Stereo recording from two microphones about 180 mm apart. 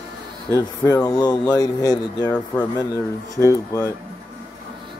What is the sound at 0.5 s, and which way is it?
Speech, 15° left (ahead or behind).